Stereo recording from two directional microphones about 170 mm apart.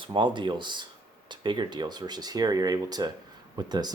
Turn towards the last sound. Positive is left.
turn(degrees=-25)  # may be behind; listen again after turning